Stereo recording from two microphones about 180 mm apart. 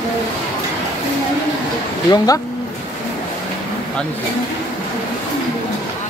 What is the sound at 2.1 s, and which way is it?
Speech, 20° left (ahead or behind).